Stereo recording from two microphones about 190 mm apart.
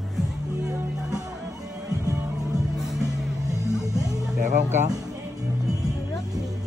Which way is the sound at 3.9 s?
20° right (ahead or behind).